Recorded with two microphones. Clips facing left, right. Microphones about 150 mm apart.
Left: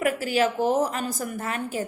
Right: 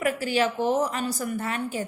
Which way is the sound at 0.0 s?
40° left (ahead or behind).